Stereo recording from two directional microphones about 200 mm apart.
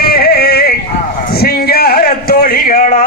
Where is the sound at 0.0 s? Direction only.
50° left (ahead or behind).